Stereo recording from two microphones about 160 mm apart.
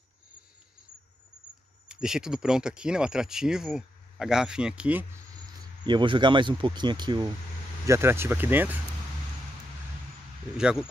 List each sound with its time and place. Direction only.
1.9 s speech: 5° right (ahead or behind)
5.9 s speech: 30° right (ahead or behind)
7.8 s speech: 15° right (ahead or behind)
10.6 s speech: 5° right (ahead or behind)